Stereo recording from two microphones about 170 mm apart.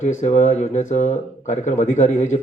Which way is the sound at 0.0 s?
45° left (ahead or behind).